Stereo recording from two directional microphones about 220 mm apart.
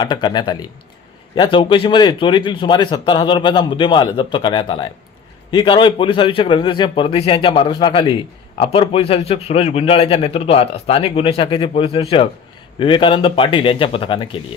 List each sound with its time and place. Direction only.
0.0 s a man's voice: 20° left (ahead or behind)